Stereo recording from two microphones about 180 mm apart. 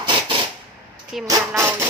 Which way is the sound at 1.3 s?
15° right (ahead or behind).